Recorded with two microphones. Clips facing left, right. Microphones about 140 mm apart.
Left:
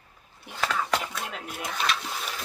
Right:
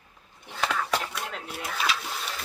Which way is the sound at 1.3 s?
5° right (ahead or behind).